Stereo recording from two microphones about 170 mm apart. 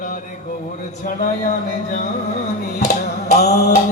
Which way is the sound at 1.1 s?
45° left (ahead or behind).